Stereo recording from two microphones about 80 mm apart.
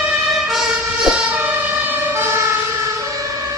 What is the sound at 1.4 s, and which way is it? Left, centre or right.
Emergency vehicle, right.